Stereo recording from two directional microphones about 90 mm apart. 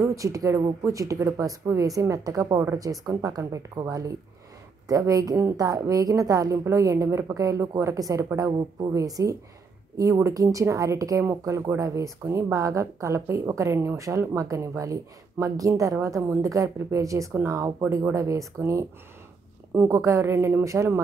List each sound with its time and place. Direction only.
0.0 s a woman's voice: 35° right (ahead or behind)
4.8 s a woman's voice: 40° right (ahead or behind)